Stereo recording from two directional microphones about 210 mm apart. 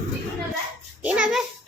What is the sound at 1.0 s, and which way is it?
Dog, 5° right (ahead or behind).